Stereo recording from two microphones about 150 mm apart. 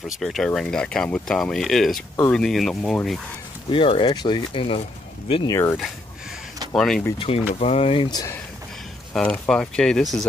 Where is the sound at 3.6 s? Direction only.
35° left (ahead or behind).